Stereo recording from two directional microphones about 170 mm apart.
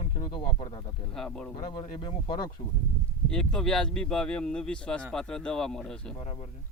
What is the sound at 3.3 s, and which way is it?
Speech, 5° left (ahead or behind).